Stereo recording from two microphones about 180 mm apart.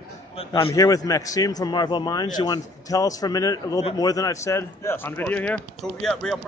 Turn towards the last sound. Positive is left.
turn(degrees=5)  # may be behind; listen again after turning